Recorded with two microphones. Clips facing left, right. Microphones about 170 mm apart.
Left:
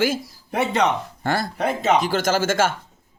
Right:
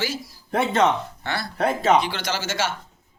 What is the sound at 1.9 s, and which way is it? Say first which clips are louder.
Speech: left 3 dB; 45° left (ahead or behind).